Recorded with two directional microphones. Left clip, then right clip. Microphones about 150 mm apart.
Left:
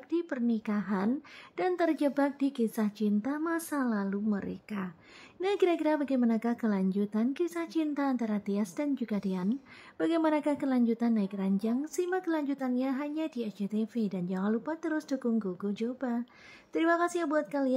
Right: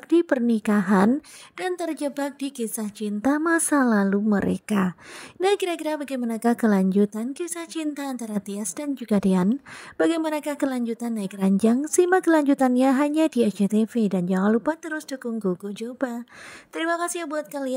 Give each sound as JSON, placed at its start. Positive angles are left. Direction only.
{"t": 0.1, "sound": "speech", "side_deg": -45}
{"t": 5.4, "sound": "speech", "side_deg": -45}